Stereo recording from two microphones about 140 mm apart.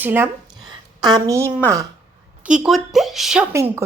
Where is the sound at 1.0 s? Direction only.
30° right (ahead or behind).